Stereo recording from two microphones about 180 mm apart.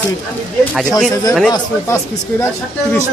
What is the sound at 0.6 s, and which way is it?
Speech, 5° left (ahead or behind).